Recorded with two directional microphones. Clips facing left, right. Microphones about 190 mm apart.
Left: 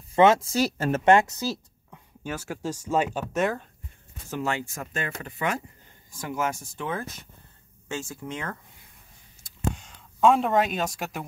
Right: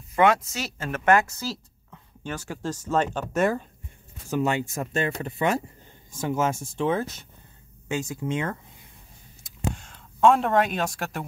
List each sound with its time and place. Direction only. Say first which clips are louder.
0.1 s speech: left 2 dB; 25° left (ahead or behind)
0.9 s speech: left 1 dB; 25° left (ahead or behind)
2.2 s speech: even; 5° left (ahead or behind)
4.3 s speech: right 4 dB; 20° right (ahead or behind)
9.8 s speech: right 1 dB; 5° left (ahead or behind)